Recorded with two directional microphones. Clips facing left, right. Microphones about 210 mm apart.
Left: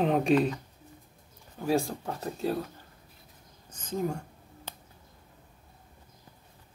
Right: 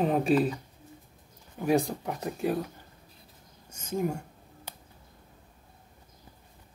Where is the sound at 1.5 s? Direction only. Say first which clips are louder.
Right 2 dB; 20° right (ahead or behind).